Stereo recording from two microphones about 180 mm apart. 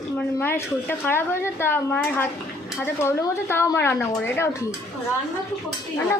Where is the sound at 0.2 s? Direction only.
10° left (ahead or behind).